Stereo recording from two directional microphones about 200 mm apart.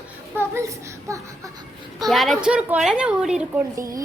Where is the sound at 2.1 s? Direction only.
Centre (ahead or behind).